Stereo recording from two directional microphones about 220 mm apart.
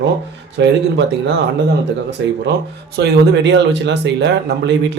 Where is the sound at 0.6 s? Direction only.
55° right (ahead or behind).